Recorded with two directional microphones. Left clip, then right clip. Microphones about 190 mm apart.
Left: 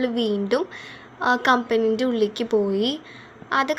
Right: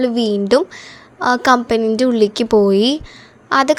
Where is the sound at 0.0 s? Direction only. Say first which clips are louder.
Right 6 dB; 35° right (ahead or behind).